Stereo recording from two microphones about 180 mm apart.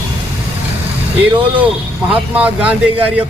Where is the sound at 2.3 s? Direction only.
10° right (ahead or behind).